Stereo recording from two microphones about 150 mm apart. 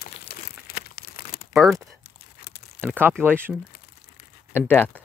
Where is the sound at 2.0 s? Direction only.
90° left.